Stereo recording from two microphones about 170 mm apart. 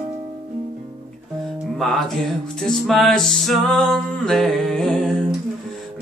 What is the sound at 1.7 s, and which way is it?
Music, centre (ahead or behind).